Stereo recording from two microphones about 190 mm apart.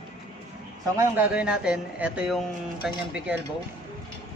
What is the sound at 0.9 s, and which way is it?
Speech, 10° right (ahead or behind).